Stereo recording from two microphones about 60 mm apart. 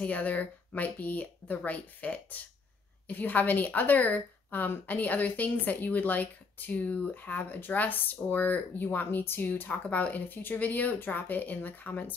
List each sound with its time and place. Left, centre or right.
0.0 s a woman's voice: left